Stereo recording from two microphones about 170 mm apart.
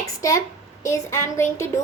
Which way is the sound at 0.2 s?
20° left (ahead or behind).